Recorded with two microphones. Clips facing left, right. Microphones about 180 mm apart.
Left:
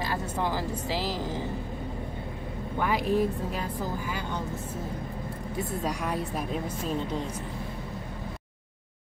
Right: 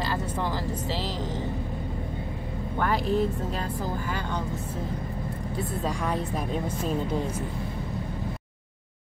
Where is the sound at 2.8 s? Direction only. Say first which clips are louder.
Even; 10° left (ahead or behind).